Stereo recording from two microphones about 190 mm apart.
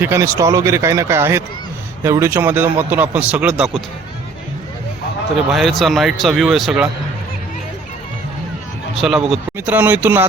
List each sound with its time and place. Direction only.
0.0 s a man's voice: 15° right (ahead or behind)
5.5 s speech: centre (ahead or behind)
9.0 s a man's voice: centre (ahead or behind)